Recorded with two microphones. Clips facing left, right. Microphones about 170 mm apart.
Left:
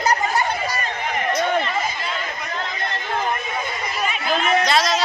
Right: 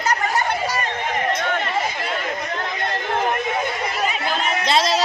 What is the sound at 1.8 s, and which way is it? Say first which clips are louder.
Chatter: right 2 dB; 65° right (ahead or behind).